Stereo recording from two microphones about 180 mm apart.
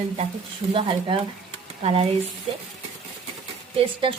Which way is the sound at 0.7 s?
30° right (ahead or behind).